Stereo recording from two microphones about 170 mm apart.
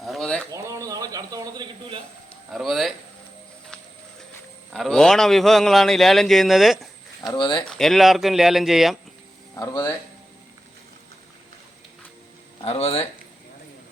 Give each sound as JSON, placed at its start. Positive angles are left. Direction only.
{"t": 0.0, "sound": "bird", "side_deg": 0}
{"t": 0.5, "sound": "a sound", "side_deg": -20}
{"t": 2.5, "sound": "a man's voice", "side_deg": 0}
{"t": 4.7, "sound": "a man's voice", "side_deg": 0}
{"t": 7.2, "sound": "speech", "side_deg": 25}
{"t": 7.6, "sound": "a man's voice", "side_deg": 5}
{"t": 9.6, "sound": "speech", "side_deg": 20}
{"t": 12.6, "sound": "speech", "side_deg": 35}